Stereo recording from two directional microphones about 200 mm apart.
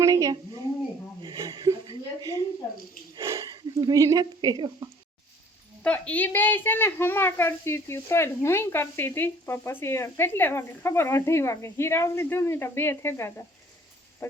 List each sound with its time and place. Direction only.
0.0 s a woman's voice: 15° right (ahead or behind)
1.2 s a sound: 20° right (ahead or behind)
3.2 s speech: 15° right (ahead or behind)
5.8 s a woman's voice: 5° left (ahead or behind)